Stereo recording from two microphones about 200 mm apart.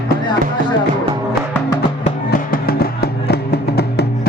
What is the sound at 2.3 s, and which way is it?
Music, 45° left (ahead or behind).